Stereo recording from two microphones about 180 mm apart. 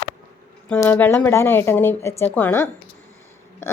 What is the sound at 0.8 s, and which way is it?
A woman's voice, 10° left (ahead or behind).